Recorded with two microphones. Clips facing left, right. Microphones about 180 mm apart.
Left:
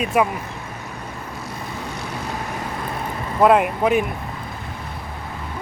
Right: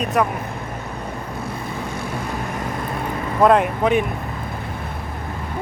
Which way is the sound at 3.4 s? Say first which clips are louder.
Even; 5° left (ahead or behind).